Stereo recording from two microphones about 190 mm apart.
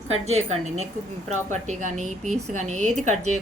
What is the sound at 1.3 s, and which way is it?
A woman's voice, 40° right (ahead or behind).